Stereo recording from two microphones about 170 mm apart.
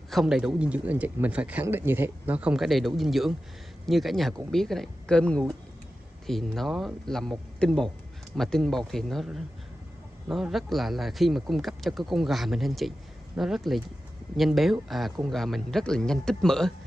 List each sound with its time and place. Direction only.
0.1 s speech: centre (ahead or behind)